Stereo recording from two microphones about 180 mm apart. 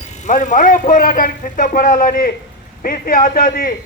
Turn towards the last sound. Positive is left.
turn(degrees=50)  # may be behind; listen again after turning